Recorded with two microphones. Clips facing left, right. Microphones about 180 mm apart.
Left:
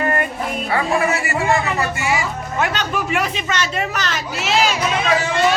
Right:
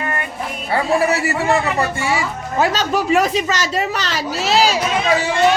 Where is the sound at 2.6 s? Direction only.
35° right (ahead or behind).